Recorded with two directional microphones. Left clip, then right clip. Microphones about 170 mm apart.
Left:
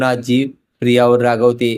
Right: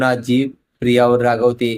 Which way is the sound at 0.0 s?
15° left (ahead or behind).